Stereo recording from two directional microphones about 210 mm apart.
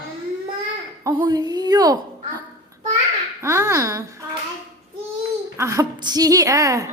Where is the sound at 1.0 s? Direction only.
20° right (ahead or behind).